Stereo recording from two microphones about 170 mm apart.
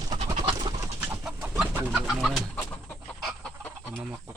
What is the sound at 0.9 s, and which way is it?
Bird, 10° right (ahead or behind).